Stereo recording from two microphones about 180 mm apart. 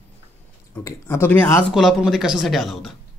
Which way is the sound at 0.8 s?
15° left (ahead or behind).